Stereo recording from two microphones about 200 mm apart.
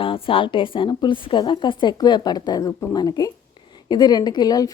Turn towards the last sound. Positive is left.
turn(degrees=20)  # may be behind; listen again after turning